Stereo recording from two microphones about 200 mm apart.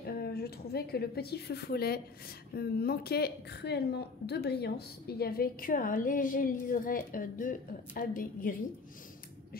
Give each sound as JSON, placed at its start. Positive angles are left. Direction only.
{"t": 0.0, "sound": "a woman's voice", "side_deg": 50}